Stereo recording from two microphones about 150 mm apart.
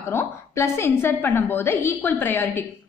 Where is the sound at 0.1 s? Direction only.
15° left (ahead or behind).